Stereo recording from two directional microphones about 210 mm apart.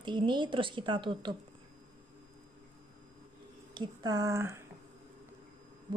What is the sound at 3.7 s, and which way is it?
Speech, 20° right (ahead or behind).